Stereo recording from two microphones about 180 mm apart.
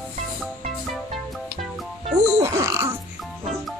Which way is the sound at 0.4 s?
Centre (ahead or behind).